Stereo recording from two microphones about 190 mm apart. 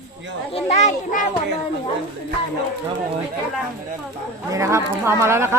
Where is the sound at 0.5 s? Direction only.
35° left (ahead or behind).